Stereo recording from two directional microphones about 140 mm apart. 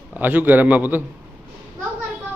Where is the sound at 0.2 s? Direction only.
10° right (ahead or behind).